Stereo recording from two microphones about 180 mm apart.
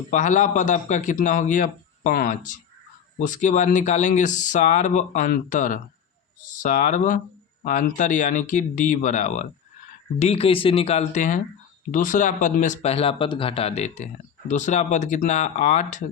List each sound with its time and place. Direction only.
0.1 s speech: 45° left (ahead or behind)